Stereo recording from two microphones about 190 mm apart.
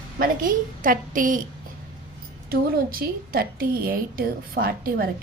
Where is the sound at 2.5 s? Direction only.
50° right (ahead or behind).